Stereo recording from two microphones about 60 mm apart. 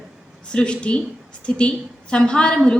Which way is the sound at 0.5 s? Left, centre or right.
Centre.